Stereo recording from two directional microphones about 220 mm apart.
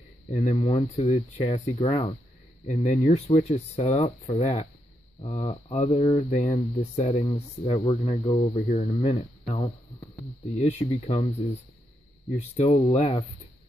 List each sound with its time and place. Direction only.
0.3 s speech: 30° left (ahead or behind)
10.6 s speech: 30° left (ahead or behind)
12.4 s speech: 30° left (ahead or behind)